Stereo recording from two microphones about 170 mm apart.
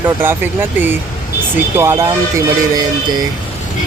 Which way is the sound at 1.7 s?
15° right (ahead or behind).